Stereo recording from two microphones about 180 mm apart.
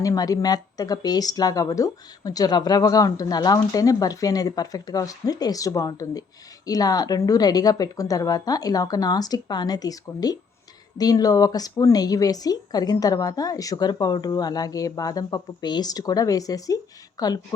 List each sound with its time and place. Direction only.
0.0 s a woman's voice: 20° left (ahead or behind)